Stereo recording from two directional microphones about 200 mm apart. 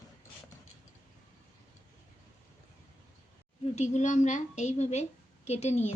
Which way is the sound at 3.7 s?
35° left (ahead or behind).